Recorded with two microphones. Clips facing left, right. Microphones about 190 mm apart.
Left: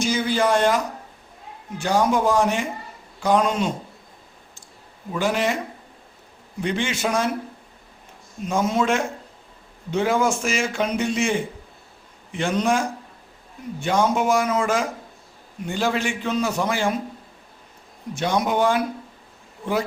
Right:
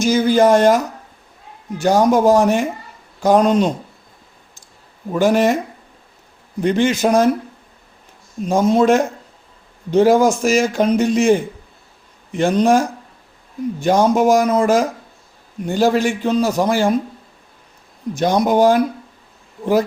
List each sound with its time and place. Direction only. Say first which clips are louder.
0.0 s speech: right 8 dB; 45° right (ahead or behind)
1.8 s a man's voice: right 7 dB; 40° right (ahead or behind)
5.1 s speech: right 8 dB; 45° right (ahead or behind)
6.6 s a man's voice: right 9 dB; 40° right (ahead or behind)
8.4 s a man's voice: right 8 dB; 35° right (ahead or behind)
18.1 s a man's voice: right 7 dB; 40° right (ahead or behind)